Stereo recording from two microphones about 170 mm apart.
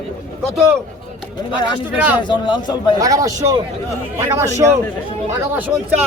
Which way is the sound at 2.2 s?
25° left (ahead or behind).